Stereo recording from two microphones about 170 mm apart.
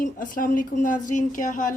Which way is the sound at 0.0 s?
55° left (ahead or behind).